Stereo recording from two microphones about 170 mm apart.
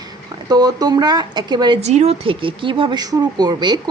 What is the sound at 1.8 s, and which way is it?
Speech, 40° right (ahead or behind).